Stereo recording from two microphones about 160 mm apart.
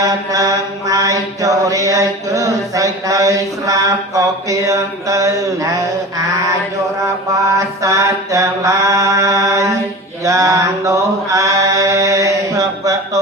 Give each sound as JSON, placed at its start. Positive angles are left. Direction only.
{"t": 0.0, "sound": "mantra", "side_deg": -20}
{"t": 7.8, "sound": "mantra", "side_deg": -20}